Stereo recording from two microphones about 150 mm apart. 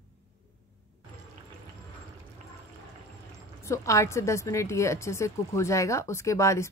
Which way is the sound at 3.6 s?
20° left (ahead or behind).